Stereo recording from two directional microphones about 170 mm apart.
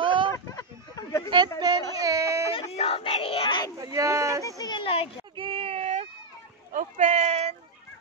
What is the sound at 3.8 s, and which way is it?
Speech, 20° right (ahead or behind).